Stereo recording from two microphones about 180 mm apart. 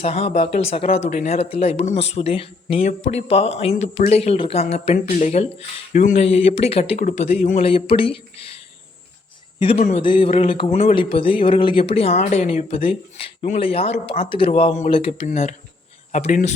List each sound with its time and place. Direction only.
0.0 s speech: 35° left (ahead or behind)
9.6 s speech: 30° left (ahead or behind)